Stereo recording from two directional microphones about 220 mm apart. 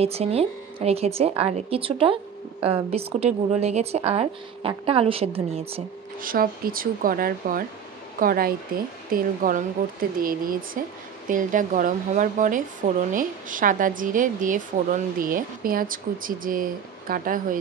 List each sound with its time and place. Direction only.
0.0 s speech: 25° right (ahead or behind)
6.2 s a woman's voice: 40° right (ahead or behind)